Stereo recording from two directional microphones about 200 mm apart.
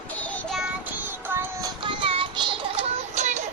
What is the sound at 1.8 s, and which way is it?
Child singing, 25° right (ahead or behind).